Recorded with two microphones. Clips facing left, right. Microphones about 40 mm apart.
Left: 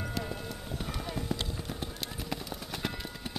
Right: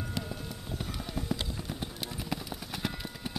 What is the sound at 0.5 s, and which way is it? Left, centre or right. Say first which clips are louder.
Clip-clop: left 1 dB; centre.